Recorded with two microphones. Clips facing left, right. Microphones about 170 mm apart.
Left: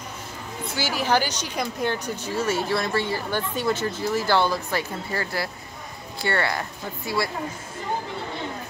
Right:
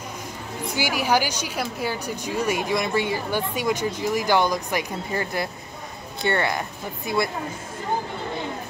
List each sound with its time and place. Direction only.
0.7 s a woman's voice: 10° right (ahead or behind)